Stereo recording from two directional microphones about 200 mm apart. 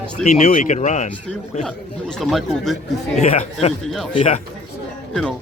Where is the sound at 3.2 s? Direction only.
30° left (ahead or behind).